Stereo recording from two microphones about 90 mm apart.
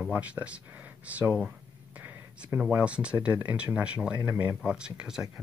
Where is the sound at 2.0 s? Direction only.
25° right (ahead or behind).